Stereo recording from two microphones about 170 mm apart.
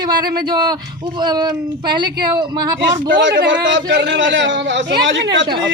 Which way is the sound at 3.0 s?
90° right.